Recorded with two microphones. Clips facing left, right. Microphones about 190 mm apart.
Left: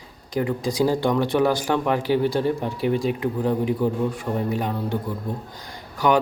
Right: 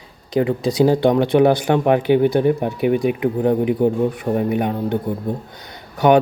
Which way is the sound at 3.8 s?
20° right (ahead or behind).